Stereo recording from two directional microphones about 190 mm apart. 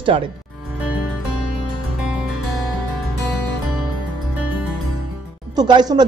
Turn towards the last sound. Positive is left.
turn(degrees=-20)  # may be behind; listen again after turning